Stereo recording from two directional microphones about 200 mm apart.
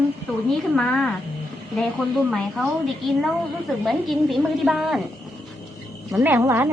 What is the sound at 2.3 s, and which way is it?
A woman's voice, centre (ahead or behind).